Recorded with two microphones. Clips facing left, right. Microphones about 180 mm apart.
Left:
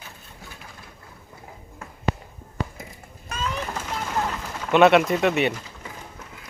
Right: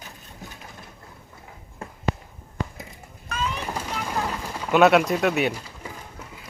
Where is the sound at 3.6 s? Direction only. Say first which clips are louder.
Right 1 dB; 15° right (ahead or behind).